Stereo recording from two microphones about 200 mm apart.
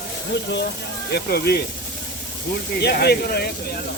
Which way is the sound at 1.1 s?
55° left (ahead or behind).